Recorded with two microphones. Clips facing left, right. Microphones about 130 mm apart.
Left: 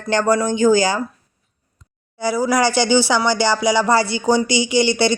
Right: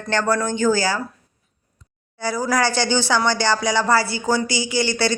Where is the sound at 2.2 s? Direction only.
10° left (ahead or behind).